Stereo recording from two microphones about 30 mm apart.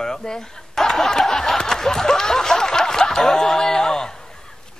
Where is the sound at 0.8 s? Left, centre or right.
Centre.